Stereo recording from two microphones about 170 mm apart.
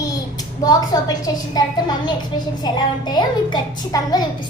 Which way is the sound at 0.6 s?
20° left (ahead or behind).